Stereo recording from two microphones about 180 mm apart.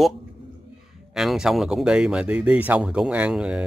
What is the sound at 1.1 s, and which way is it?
Speech, centre (ahead or behind).